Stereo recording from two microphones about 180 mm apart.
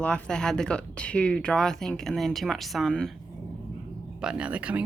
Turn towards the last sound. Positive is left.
turn(degrees=-5)  # may be behind; listen again after turning